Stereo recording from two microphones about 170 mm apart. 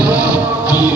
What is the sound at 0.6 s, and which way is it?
Music, 20° left (ahead or behind).